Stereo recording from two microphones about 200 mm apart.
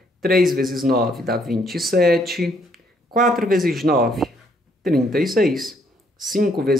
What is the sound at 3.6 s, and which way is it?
Speech, centre (ahead or behind).